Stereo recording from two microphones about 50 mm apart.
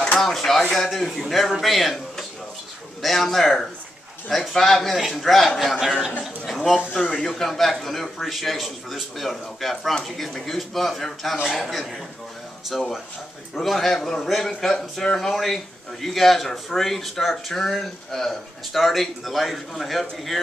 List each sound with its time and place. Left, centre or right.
0.2 s a man's voice: centre
7.0 s a man's voice: centre
7.2 s a man's voice: centre